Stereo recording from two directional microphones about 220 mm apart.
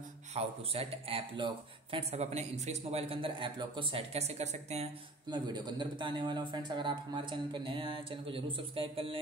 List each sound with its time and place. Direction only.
0.3 s speech: 30° right (ahead or behind)
5.3 s speech: 20° right (ahead or behind)